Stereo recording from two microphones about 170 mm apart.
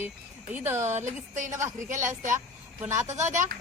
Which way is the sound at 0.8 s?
45° right (ahead or behind).